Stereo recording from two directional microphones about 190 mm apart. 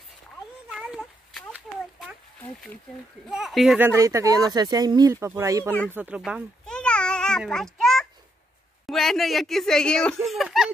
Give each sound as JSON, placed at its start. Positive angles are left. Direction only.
{"t": 0.7, "sound": "a sound", "side_deg": 0}
{"t": 3.3, "sound": "speech", "side_deg": 0}
{"t": 5.7, "sound": "speech", "side_deg": 10}
{"t": 5.9, "sound": "babbling", "side_deg": -5}
{"t": 8.8, "sound": "speech", "side_deg": 0}